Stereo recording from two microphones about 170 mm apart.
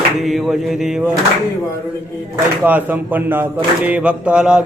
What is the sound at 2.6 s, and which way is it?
Speech, 10° right (ahead or behind).